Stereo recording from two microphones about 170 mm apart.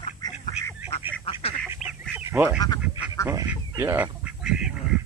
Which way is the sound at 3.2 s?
15° right (ahead or behind).